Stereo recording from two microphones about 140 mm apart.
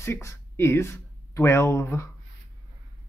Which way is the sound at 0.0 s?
20° left (ahead or behind).